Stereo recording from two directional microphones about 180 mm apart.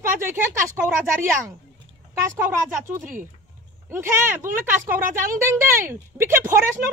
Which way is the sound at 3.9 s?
15° right (ahead or behind).